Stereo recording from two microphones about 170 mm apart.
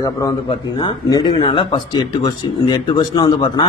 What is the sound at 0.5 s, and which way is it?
Speech, 30° left (ahead or behind).